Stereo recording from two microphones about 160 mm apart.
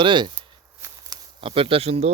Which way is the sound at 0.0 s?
30° right (ahead or behind).